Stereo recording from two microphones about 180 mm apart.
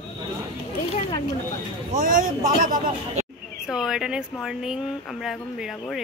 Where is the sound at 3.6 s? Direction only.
5° right (ahead or behind).